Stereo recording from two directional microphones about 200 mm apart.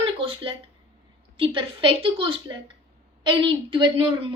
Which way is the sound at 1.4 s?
25° right (ahead or behind).